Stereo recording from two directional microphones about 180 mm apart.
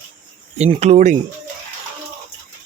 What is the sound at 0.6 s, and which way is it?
Speech, 35° right (ahead or behind).